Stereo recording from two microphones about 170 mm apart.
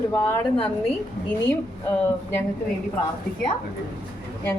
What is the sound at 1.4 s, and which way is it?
Speech, 10° left (ahead or behind).